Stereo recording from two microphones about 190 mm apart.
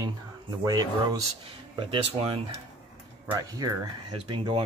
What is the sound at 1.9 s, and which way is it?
Speech, 30° right (ahead or behind).